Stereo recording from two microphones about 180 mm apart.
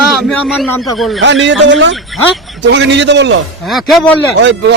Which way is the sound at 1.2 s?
85° right.